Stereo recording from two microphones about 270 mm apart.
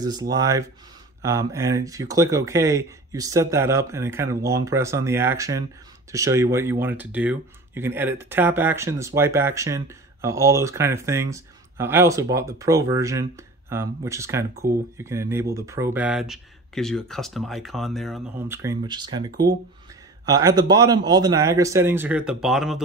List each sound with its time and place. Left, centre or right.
0.0 s speech: centre